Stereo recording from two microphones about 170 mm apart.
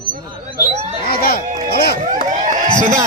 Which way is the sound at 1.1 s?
65° left (ahead or behind).